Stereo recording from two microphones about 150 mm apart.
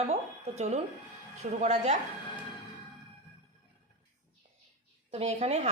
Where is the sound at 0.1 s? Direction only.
50° right (ahead or behind).